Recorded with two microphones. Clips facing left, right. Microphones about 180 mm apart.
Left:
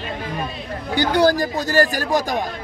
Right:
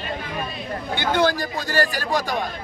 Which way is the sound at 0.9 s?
40° left (ahead or behind).